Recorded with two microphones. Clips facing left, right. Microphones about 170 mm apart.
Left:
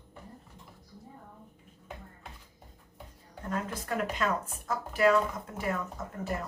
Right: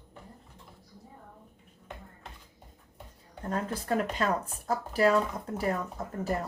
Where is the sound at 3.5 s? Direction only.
35° right (ahead or behind).